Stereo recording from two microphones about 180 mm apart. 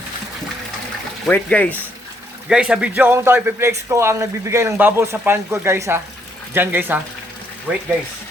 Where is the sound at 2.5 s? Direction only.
5° right (ahead or behind).